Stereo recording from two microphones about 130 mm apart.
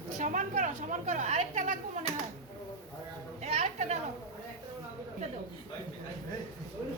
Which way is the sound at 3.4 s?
60° right (ahead or behind).